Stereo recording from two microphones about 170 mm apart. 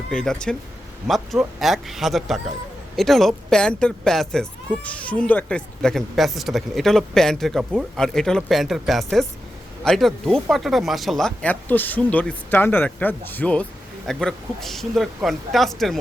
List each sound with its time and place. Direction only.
0.1 s speech: 5° left (ahead or behind)